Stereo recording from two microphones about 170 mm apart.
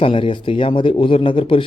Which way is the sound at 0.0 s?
30° left (ahead or behind).